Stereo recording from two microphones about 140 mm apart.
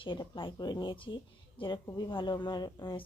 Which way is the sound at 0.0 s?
35° left (ahead or behind).